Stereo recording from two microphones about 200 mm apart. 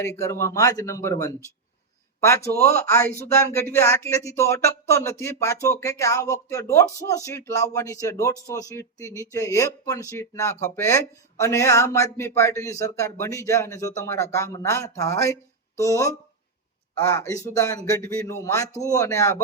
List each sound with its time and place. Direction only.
0.0 s speech: 15° left (ahead or behind)